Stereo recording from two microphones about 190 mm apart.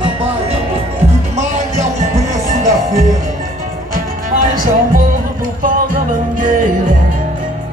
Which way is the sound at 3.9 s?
45° right (ahead or behind).